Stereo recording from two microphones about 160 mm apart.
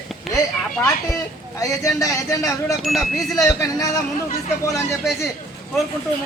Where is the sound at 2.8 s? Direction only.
Centre (ahead or behind).